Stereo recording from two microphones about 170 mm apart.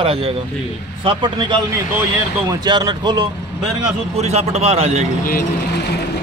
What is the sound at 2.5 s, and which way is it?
Speech, 20° right (ahead or behind).